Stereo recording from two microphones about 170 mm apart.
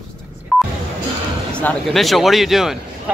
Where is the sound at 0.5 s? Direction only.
Centre (ahead or behind).